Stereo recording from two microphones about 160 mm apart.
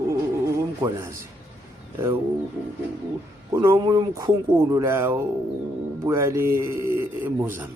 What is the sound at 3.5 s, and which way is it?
A man's voice, 20° right (ahead or behind).